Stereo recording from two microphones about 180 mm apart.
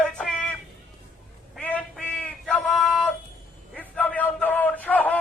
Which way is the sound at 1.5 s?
5° left (ahead or behind).